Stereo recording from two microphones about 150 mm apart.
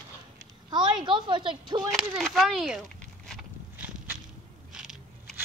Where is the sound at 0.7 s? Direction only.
30° right (ahead or behind).